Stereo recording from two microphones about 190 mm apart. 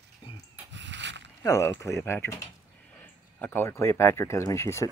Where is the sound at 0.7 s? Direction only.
70° right (ahead or behind).